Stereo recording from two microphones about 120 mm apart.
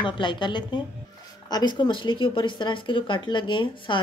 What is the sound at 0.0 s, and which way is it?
A woman's voice, 40° left (ahead or behind).